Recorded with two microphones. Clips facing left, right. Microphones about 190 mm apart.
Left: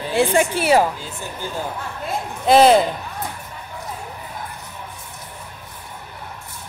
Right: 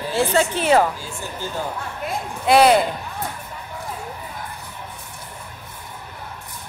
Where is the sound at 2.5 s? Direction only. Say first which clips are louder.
Left 2 dB; 25° left (ahead or behind).